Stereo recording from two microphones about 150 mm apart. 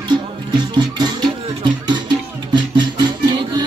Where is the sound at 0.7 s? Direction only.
25° right (ahead or behind).